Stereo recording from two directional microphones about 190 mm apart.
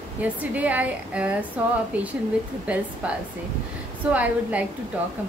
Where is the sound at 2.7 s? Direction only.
10° right (ahead or behind).